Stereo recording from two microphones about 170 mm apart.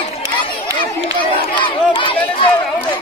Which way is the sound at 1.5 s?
30° left (ahead or behind).